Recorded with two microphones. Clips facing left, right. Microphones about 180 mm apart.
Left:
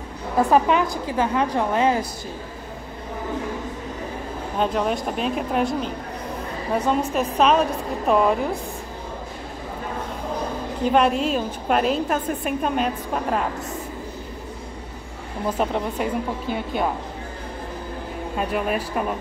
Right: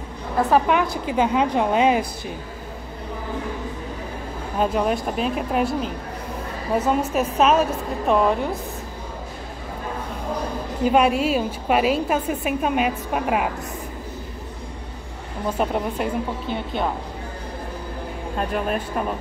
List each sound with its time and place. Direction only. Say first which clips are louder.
0.4 s speech: left 1 dB; 5° right (ahead or behind)
1.0 s a woman's voice: right 2 dB; 15° right (ahead or behind)
4.6 s speech: right 1 dB; 5° right (ahead or behind)
10.8 s a woman's voice: right 1 dB; 5° right (ahead or behind)
15.6 s speech: right 1 dB; centre (ahead or behind)
18.4 s speech: even; 5° left (ahead or behind)